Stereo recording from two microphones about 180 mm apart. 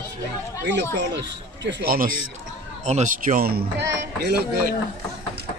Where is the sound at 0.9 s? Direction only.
80° right; by 4.7 s 60° right (ahead or behind).